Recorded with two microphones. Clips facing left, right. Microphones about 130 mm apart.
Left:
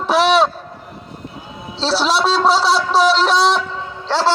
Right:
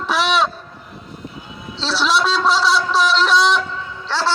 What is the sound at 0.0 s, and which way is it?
Fowl, 35° left (ahead or behind).